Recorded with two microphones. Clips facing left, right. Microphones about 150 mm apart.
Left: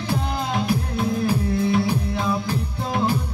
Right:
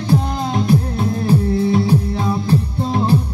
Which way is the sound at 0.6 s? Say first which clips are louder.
Right 5 dB; 30° right (ahead or behind).